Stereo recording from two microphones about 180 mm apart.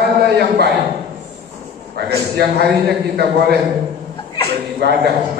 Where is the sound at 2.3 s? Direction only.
65° right (ahead or behind).